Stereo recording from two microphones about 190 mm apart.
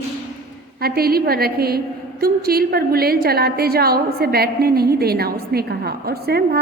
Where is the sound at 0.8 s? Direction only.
55° right (ahead or behind).